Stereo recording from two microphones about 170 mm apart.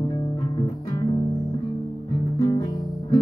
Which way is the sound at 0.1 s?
25° left (ahead or behind).